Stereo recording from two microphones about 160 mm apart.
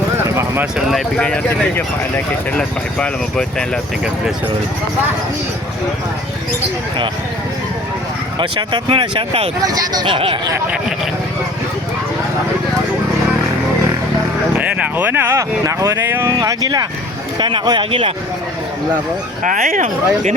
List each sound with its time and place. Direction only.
0.3 s clip-clop: 15° right (ahead or behind)
0.9 s speech: 5° left (ahead or behind)
8.4 s speech: 30° right (ahead or behind)
9.6 s speech: 25° right (ahead or behind)
14.6 s speech: 10° right (ahead or behind); by 18.1 s 30° right (ahead or behind)
19.4 s speech: 55° right (ahead or behind)